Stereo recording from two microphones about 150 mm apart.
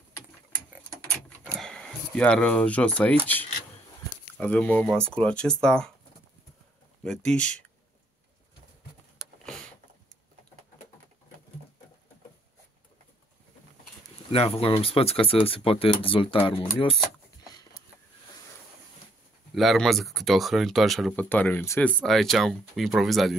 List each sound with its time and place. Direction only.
1.1 s a sound: 5° left (ahead or behind)
4.4 s speech: 10° left (ahead or behind)
7.0 s speech: 5° left (ahead or behind)
9.4 s a sound: 5° left (ahead or behind)
14.3 s speech: 40° left (ahead or behind)
17.5 s a sound: 25° left (ahead or behind)
19.5 s speech: centre (ahead or behind)
21.3 s speech: 10° left (ahead or behind)
22.0 s speech: centre (ahead or behind)